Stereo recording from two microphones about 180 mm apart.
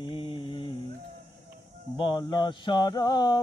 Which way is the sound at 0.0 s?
30° left (ahead or behind).